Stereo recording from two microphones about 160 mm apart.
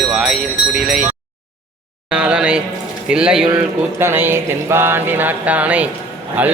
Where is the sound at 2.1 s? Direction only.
5° right (ahead or behind).